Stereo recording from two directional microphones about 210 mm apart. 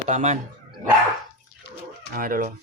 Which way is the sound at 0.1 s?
35° right (ahead or behind).